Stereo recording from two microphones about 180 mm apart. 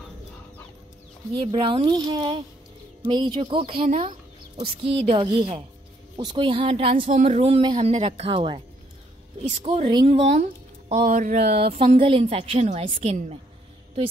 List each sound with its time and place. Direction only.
1.3 s speech: 30° right (ahead or behind)
9.7 s speech: 25° right (ahead or behind); by 11.7 s 60° right (ahead or behind)
11.7 s speech: 35° right (ahead or behind)